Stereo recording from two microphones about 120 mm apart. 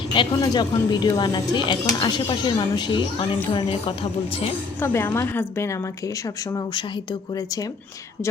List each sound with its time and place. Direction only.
0.3 s speech: 35° left (ahead or behind)
4.8 s a woman's voice: 20° left (ahead or behind)